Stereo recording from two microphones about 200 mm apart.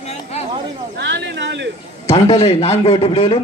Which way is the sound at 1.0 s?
60° right (ahead or behind).